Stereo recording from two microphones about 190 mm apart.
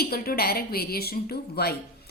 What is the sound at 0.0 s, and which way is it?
A woman's voice, 55° left (ahead or behind).